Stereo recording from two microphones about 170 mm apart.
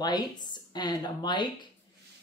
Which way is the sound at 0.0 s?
25° left (ahead or behind).